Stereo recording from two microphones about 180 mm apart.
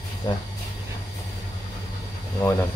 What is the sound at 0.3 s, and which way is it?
Speech, 20° left (ahead or behind).